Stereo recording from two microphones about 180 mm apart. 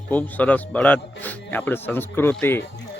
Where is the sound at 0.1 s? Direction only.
10° left (ahead or behind).